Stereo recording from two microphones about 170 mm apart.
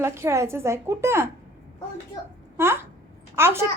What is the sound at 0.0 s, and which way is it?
A woman's voice, 15° right (ahead or behind).